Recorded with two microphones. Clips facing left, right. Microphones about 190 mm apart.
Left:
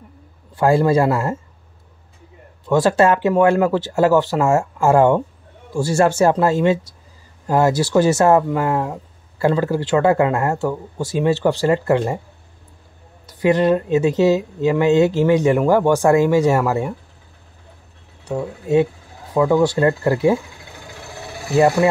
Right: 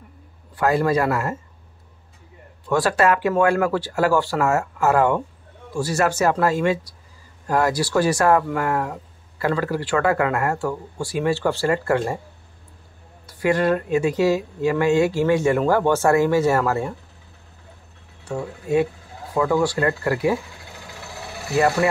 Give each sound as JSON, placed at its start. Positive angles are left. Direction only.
{"t": 0.6, "sound": "speech", "side_deg": 25}
{"t": 2.6, "sound": "speech", "side_deg": 20}
{"t": 13.3, "sound": "speech", "side_deg": 20}
{"t": 18.2, "sound": "speech", "side_deg": 20}